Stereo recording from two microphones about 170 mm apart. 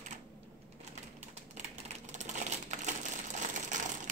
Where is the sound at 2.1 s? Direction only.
45° right (ahead or behind).